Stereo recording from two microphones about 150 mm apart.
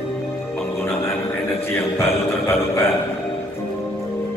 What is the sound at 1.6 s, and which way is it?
Music, 15° left (ahead or behind).